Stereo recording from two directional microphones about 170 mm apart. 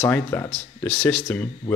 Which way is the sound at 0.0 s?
15° left (ahead or behind).